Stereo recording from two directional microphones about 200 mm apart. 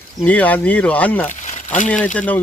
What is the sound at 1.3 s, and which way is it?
Crumpling, 40° left (ahead or behind).